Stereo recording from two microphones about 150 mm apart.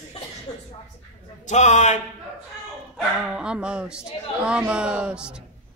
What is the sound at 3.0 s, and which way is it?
Speech, 5° right (ahead or behind).